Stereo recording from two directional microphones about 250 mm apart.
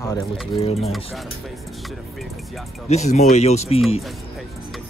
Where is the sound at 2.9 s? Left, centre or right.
Left.